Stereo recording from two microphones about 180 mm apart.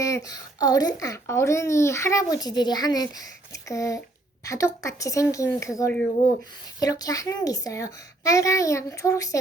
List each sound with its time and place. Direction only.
0.0 s a woman's voice: 20° left (ahead or behind)